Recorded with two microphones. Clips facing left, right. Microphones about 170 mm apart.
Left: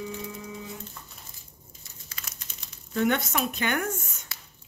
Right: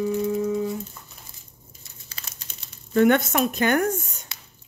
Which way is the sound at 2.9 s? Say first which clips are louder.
Right 7 dB; 55° right (ahead or behind).